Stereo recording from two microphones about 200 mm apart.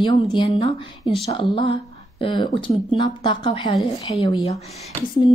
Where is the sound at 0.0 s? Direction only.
25° left (ahead or behind).